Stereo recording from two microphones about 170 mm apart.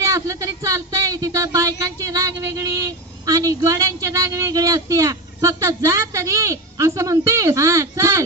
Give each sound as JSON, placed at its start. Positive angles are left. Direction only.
{"t": 0.0, "sound": "speech", "side_deg": -20}